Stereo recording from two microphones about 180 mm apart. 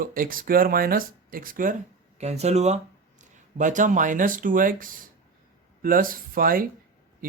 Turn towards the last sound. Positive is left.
turn(degrees=-50)  # may be behind; listen again after turning